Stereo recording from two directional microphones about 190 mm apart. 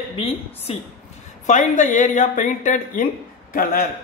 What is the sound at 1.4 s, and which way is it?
A woman's voice, 40° left (ahead or behind).